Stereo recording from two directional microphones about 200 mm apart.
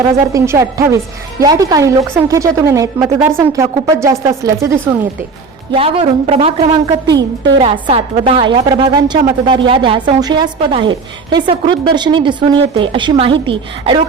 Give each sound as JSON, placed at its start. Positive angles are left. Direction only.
{"t": 0.3, "sound": "a woman's voice", "side_deg": -15}
{"t": 5.7, "sound": "a woman's voice", "side_deg": -30}
{"t": 7.1, "sound": "a woman's voice", "side_deg": -60}
{"t": 7.6, "sound": "a woman's voice", "side_deg": -30}